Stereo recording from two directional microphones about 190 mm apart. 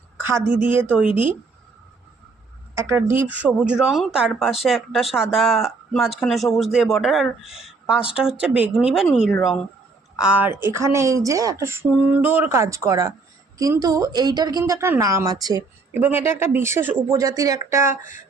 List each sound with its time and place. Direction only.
0.2 s a woman's voice: 10° right (ahead or behind)
2.7 s a man's voice: 15° right (ahead or behind)